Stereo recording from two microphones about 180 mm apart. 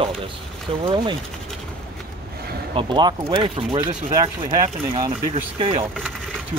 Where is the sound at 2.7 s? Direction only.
25° right (ahead or behind).